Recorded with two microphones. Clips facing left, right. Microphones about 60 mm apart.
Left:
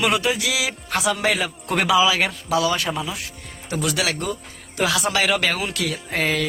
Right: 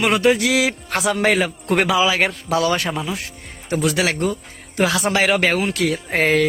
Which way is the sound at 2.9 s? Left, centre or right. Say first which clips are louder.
Right 2 dB; right.